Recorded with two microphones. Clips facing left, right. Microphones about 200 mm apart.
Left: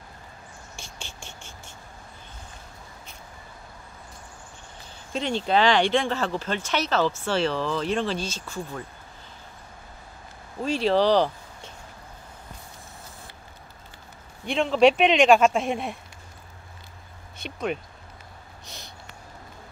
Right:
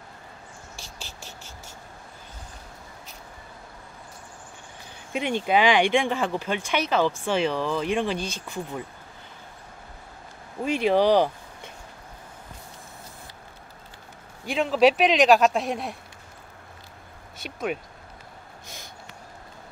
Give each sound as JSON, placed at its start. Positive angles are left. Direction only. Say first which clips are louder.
{"t": 0.7, "sound": "cricket", "louder": "left 1 dB", "side_deg": -35}
{"t": 1.0, "sound": "cricket", "louder": "even", "side_deg": 0}
{"t": 5.1, "sound": "speech", "louder": "right 1 dB", "side_deg": -15}
{"t": 10.6, "sound": "speech", "louder": "right 1 dB", "side_deg": -15}
{"t": 14.4, "sound": "speech", "louder": "left 1 dB", "side_deg": -5}
{"t": 17.4, "sound": "vehicle", "louder": "even", "side_deg": -5}